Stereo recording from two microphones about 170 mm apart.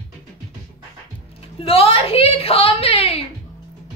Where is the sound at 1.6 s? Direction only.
35° left (ahead or behind).